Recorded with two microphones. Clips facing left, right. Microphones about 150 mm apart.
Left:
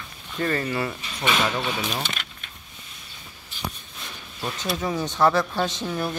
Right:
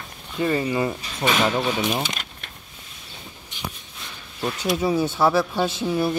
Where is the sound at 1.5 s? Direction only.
20° right (ahead or behind).